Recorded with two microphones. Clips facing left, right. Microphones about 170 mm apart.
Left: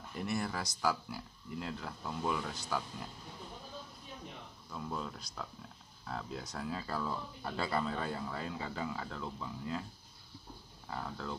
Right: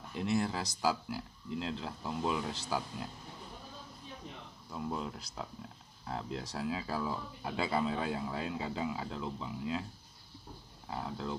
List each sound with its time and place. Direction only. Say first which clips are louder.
0.1 s speech: right 4 dB; 15° right (ahead or behind)
4.7 s speech: right 3 dB; 15° right (ahead or behind)
6.6 s speech: right 2 dB; 15° right (ahead or behind)
10.9 s speech: right 2 dB; 15° right (ahead or behind)